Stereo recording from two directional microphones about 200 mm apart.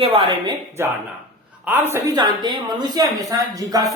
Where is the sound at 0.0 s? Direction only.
25° right (ahead or behind).